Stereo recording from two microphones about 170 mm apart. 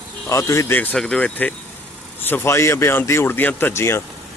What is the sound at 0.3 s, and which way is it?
Speech, 15° left (ahead or behind).